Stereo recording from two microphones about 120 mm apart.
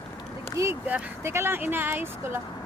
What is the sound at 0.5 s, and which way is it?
Speech, 25° right (ahead or behind).